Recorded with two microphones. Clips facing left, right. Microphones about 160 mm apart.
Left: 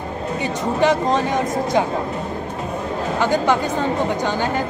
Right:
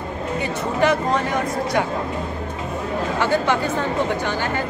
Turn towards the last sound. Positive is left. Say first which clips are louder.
# left 2 dB
turn(degrees=15)  # may be behind; listen again after turning